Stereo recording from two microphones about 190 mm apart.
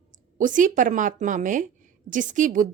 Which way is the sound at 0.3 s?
45° right (ahead or behind).